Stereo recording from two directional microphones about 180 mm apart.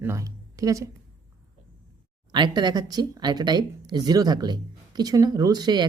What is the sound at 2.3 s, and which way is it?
Speech, 25° right (ahead or behind).